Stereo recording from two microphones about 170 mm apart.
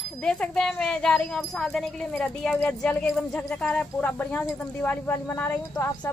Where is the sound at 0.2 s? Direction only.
5° left (ahead or behind).